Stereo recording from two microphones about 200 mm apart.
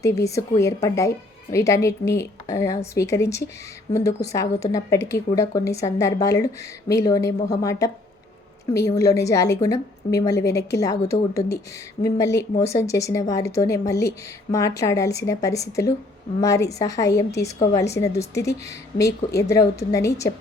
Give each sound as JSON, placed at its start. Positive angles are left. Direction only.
{"t": 0.0, "sound": "a woman's voice", "side_deg": 15}
{"t": 9.0, "sound": "a woman's voice", "side_deg": 15}